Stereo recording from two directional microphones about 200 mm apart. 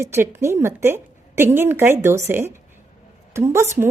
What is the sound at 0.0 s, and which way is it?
A woman's voice, 10° right (ahead or behind).